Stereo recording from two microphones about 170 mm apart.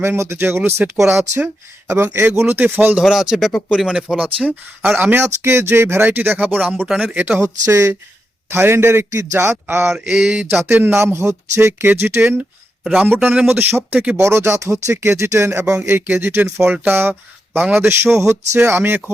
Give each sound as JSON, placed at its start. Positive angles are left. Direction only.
{"t": 0.0, "sound": "speech", "side_deg": -15}
{"t": 1.9, "sound": "speech", "side_deg": -15}
{"t": 9.8, "sound": "a sound", "side_deg": -5}
{"t": 10.7, "sound": "speech", "side_deg": -10}